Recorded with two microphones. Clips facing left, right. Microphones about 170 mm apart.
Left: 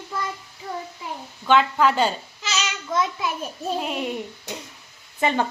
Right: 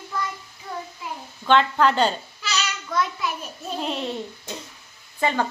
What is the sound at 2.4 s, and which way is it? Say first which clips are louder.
Child singing: left 3 dB; 20° left (ahead or behind).